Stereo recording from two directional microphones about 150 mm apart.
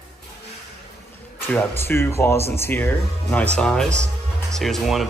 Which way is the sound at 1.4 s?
15° left (ahead or behind).